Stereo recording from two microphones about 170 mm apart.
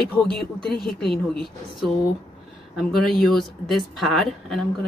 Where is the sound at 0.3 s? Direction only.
5° left (ahead or behind).